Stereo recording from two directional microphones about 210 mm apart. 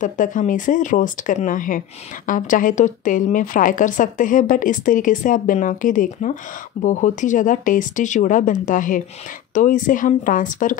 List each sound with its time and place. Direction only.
0.0 s a woman's voice: 40° left (ahead or behind)